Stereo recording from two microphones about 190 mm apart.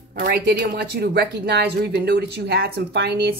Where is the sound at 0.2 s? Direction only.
55° right (ahead or behind).